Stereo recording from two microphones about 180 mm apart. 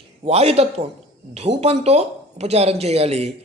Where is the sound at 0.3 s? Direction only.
35° right (ahead or behind).